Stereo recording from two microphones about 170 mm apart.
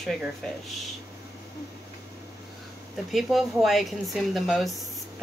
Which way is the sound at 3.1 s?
Centre (ahead or behind).